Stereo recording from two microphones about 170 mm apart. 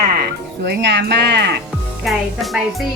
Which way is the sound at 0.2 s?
80° right.